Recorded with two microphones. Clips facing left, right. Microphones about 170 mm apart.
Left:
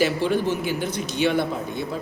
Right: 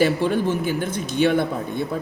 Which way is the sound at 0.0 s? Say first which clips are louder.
Right 2 dB; 50° right (ahead or behind).